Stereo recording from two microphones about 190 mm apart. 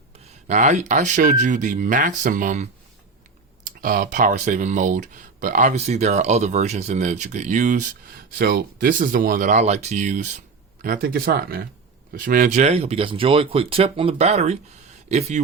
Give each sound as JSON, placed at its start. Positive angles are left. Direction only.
{"t": 0.4, "sound": "speech", "side_deg": -40}
{"t": 3.8, "sound": "speech", "side_deg": -50}
{"t": 8.4, "sound": "speech", "side_deg": -50}
{"t": 10.8, "sound": "speech", "side_deg": -50}